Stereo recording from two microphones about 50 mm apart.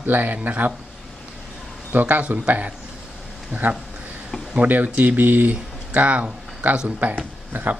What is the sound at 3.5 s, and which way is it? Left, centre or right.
Speech, right.